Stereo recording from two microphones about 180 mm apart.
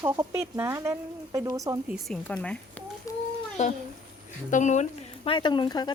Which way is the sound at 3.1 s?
20° left (ahead or behind).